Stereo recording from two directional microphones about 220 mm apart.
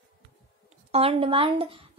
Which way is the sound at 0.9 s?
25° right (ahead or behind).